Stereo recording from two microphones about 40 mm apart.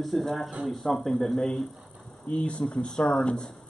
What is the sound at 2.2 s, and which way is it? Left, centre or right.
Speech, left.